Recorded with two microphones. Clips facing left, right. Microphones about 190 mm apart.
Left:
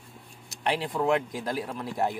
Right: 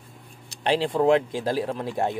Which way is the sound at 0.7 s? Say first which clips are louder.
Right 6 dB; 30° right (ahead or behind).